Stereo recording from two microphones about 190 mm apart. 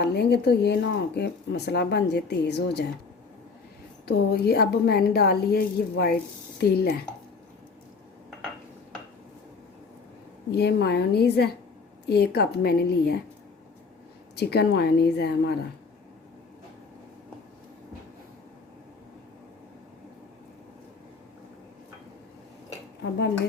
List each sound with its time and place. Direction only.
0.0 s speech: 60° left (ahead or behind)
4.0 s speech: 55° left (ahead or behind)
10.5 s speech: 60° left (ahead or behind)
14.3 s speech: 60° left (ahead or behind)